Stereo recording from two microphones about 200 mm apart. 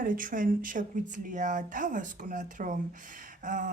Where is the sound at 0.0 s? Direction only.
45° right (ahead or behind).